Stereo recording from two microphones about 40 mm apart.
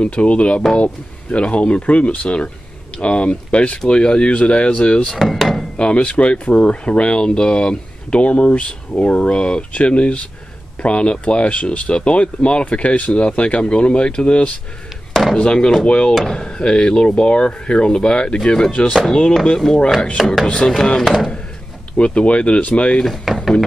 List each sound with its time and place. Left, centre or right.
0.0 s speech: left
5.1 s wood: centre
5.8 s speech: left
9.3 s speech: left
16.2 s speech: centre
20.2 s speech: centre
20.6 s speech: centre
21.9 s speech: left
23.0 s a sound: centre